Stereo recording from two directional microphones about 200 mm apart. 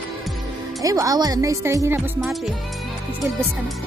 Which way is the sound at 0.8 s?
15° right (ahead or behind).